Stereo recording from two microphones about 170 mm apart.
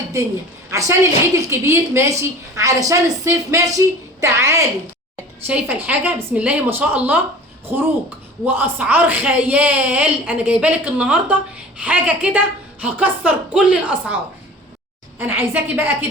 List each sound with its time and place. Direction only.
0.7 s a woman's voice: 20° right (ahead or behind)
15.4 s a woman's voice: 10° right (ahead or behind)